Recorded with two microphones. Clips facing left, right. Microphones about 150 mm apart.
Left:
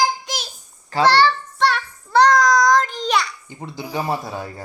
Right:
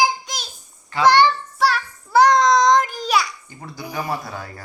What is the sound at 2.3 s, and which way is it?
Child singing, 25° right (ahead or behind).